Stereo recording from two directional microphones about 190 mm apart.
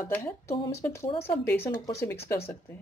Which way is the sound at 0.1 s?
15° left (ahead or behind).